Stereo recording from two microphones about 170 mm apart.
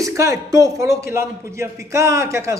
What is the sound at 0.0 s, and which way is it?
Speech, 20° right (ahead or behind).